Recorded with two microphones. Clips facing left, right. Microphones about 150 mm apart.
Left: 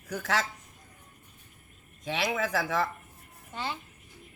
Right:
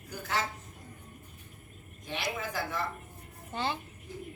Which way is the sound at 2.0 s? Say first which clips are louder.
Left 6 dB; 90° left.